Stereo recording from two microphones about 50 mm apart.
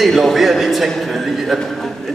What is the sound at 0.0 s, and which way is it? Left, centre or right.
A man's voice, centre.